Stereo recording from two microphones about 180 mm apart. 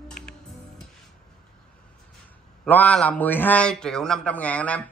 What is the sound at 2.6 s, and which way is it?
A man's voice, 10° left (ahead or behind).